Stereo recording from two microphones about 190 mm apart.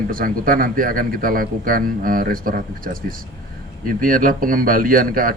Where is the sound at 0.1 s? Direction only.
50° right (ahead or behind).